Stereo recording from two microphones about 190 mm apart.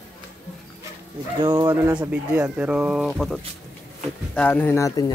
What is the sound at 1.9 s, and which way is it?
Speech, 5° right (ahead or behind).